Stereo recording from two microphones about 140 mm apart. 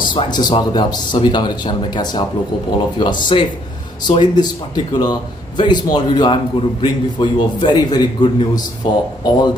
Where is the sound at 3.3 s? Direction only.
40° left (ahead or behind).